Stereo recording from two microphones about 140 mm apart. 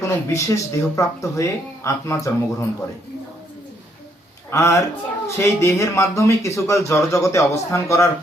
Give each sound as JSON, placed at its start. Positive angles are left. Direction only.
{"t": 0.0, "sound": "speech", "side_deg": 20}
{"t": 4.5, "sound": "speech", "side_deg": 20}